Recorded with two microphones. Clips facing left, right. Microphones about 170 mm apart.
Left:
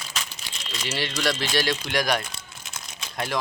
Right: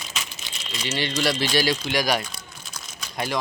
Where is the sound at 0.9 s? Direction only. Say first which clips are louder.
Right 2 dB; centre (ahead or behind).